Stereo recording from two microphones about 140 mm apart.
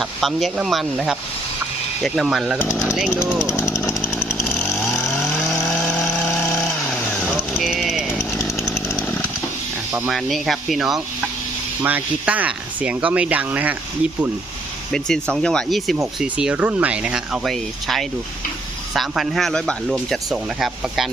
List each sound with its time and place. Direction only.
0.0 s speech: centre (ahead or behind)
3.3 s speech: 20° left (ahead or behind)
4.9 s vehicle: centre (ahead or behind)
7.3 s jackhammer: 5° right (ahead or behind)
10.1 s speech: centre (ahead or behind)
14.9 s speech: 5° left (ahead or behind)
16.2 s speech: 10° right (ahead or behind)